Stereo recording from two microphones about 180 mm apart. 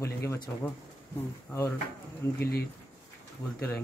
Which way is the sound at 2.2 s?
15° left (ahead or behind).